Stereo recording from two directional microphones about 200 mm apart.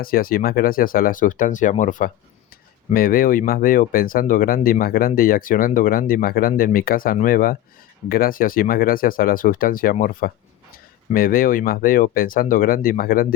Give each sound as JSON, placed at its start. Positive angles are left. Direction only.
{"t": 0.0, "sound": "speech", "side_deg": 45}